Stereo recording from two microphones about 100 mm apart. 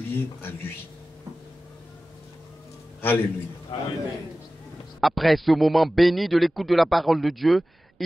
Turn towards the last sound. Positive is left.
turn(degrees=0)  # may be behind; listen again after turning